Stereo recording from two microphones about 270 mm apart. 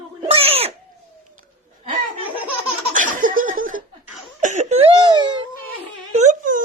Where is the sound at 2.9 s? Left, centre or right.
Right.